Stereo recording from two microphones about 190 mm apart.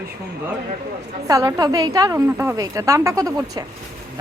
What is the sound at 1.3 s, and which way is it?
A woman's voice, 15° right (ahead or behind).